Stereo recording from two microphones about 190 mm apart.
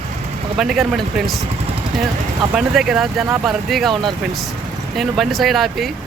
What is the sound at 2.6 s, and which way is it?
Speech, centre (ahead or behind).